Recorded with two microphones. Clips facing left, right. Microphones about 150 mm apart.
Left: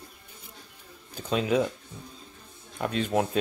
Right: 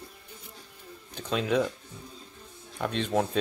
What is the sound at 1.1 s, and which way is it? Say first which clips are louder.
Speech: left 1 dB; 5° left (ahead or behind).